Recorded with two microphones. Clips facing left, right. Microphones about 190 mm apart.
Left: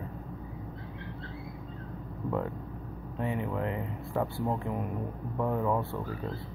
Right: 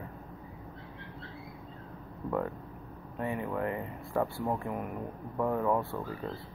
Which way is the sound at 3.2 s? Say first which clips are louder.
Left 1 dB; 20° left (ahead or behind).